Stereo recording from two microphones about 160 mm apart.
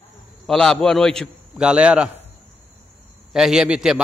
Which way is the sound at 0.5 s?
5° left (ahead or behind).